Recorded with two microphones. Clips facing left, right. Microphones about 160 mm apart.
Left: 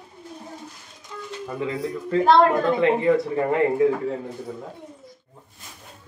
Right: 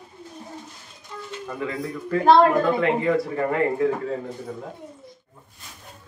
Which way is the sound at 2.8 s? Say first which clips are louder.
Left 2 dB; 20° left (ahead or behind).